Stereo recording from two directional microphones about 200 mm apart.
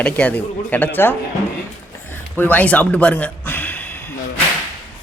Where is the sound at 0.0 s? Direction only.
5° left (ahead or behind).